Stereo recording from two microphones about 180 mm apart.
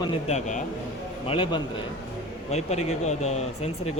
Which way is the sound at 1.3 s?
30° left (ahead or behind).